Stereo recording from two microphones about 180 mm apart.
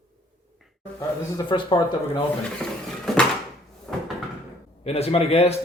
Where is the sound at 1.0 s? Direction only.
25° left (ahead or behind).